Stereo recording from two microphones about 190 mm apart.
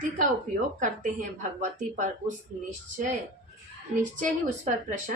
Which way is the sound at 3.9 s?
40° right (ahead or behind).